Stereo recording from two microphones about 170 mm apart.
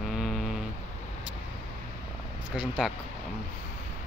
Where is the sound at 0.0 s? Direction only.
Centre (ahead or behind).